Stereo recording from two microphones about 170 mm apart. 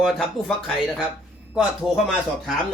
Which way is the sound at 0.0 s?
Centre (ahead or behind).